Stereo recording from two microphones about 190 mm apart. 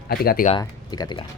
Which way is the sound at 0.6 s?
20° left (ahead or behind).